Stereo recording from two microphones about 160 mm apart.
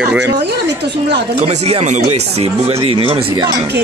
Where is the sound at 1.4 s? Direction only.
40° right (ahead or behind).